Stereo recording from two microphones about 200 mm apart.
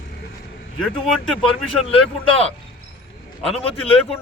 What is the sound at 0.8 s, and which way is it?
Speech, centre (ahead or behind).